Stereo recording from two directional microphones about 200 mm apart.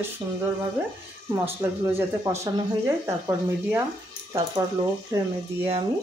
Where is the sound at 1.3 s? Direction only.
15° right (ahead or behind).